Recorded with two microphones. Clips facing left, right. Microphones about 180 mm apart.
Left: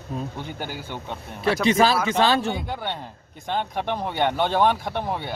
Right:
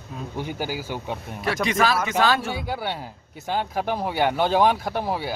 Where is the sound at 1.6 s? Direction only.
30° left (ahead or behind).